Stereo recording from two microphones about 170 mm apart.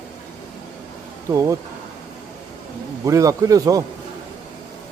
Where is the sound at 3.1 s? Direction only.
20° right (ahead or behind).